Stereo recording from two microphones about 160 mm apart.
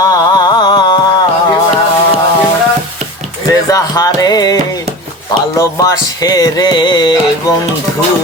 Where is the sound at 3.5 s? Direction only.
20° left (ahead or behind).